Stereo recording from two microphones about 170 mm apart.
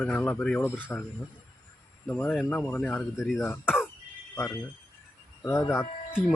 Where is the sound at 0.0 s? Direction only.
10° left (ahead or behind).